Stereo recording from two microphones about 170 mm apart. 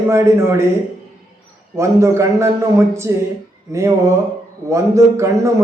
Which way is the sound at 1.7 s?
15° right (ahead or behind).